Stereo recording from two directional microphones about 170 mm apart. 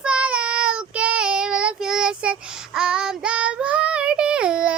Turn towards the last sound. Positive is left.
turn(degrees=-5)  # may be behind; listen again after turning